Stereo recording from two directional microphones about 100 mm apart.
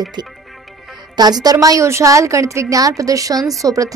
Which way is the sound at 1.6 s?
35° right (ahead or behind).